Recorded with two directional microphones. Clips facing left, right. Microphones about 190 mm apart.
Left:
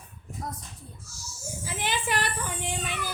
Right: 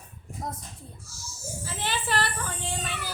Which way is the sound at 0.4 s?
20° right (ahead or behind).